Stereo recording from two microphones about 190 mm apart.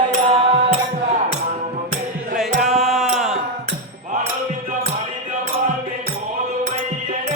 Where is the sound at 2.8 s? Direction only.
Centre (ahead or behind).